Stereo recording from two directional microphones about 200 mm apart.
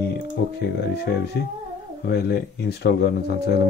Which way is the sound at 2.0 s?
55° left (ahead or behind).